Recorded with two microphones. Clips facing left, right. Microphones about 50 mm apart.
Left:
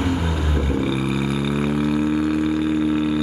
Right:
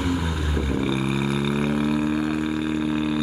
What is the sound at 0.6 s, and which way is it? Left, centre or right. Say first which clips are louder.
Didgeridoo: left 1 dB; centre.